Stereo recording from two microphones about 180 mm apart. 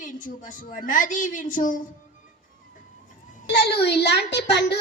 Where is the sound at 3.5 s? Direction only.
65° left (ahead or behind).